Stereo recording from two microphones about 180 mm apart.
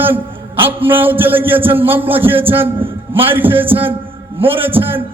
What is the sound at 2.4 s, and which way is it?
Speech, 30° right (ahead or behind).